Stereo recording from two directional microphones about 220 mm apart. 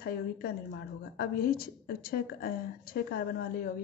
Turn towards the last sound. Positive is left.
turn(degrees=40)  # may be behind; listen again after turning